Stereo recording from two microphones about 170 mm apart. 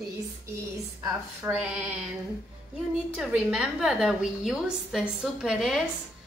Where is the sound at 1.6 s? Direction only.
5° right (ahead or behind).